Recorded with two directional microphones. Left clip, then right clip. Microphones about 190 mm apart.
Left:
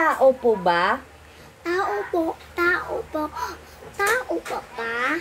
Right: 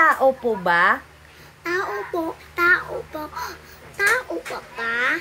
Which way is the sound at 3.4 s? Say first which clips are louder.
Left 1 dB; 10° left (ahead or behind).